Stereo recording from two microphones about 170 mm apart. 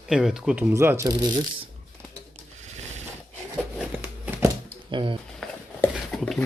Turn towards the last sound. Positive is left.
turn(degrees=5)  # may be behind; listen again after turning